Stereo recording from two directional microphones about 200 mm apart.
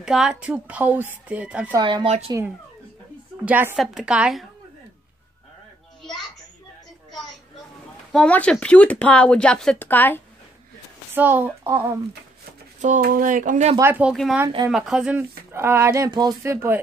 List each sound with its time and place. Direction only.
0.0 s a woman's voice: 5° right (ahead or behind)
1.8 s a woman's voice: 20° right (ahead or behind)
2.0 s speech: 35° right (ahead or behind)
3.4 s a woman's voice: 10° right (ahead or behind)
8.1 s speech: 5° left (ahead or behind)
11.1 s speech: 10° right (ahead or behind)
12.8 s speech: 40° right (ahead or behind)
13.7 s speech: 10° right (ahead or behind)